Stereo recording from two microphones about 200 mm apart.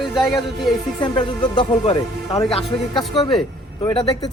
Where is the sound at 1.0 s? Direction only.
25° left (ahead or behind).